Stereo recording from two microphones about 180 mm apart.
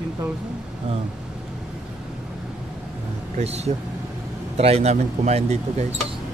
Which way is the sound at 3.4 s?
35° right (ahead or behind).